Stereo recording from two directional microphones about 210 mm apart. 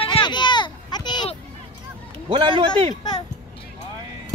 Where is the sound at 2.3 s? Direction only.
25° right (ahead or behind).